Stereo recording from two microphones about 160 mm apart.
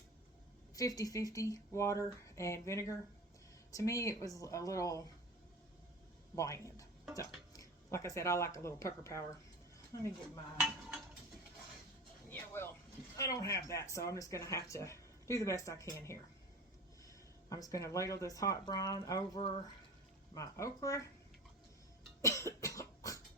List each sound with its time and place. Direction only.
0.8 s speech: 20° left (ahead or behind)
6.3 s speech: 20° left (ahead or behind)
10.6 s dishes: 5° right (ahead or behind)
12.3 s a sound: 15° left (ahead or behind)
13.1 s speech: 20° left (ahead or behind)
17.1 s speech: 20° left (ahead or behind)
22.2 s cough: 20° left (ahead or behind)